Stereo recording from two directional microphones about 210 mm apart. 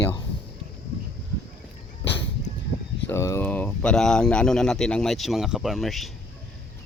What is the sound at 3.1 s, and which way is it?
Speech, 10° left (ahead or behind).